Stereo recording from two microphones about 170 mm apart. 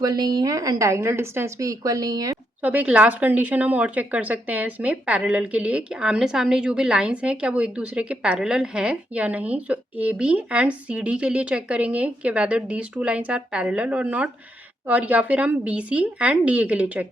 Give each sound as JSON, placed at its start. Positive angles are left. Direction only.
{"t": 0.0, "sound": "a woman's voice", "side_deg": -25}
{"t": 2.6, "sound": "a woman's voice", "side_deg": -10}